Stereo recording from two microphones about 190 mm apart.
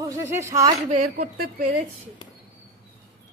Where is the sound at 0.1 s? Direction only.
15° right (ahead or behind).